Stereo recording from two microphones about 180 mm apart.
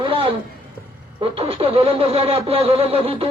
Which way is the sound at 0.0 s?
30° right (ahead or behind).